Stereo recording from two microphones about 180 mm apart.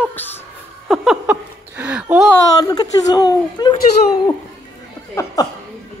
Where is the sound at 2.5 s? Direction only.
20° left (ahead or behind).